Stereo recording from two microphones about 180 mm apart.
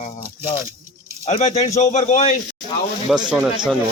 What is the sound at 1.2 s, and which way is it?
Speech, 35° left (ahead or behind).